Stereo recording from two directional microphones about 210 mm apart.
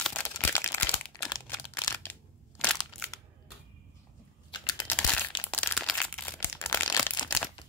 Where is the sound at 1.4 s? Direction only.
15° left (ahead or behind).